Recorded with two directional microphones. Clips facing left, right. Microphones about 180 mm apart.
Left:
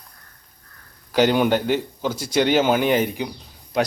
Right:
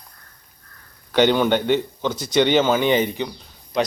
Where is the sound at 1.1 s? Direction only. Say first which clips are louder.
Right 1 dB; 5° left (ahead or behind).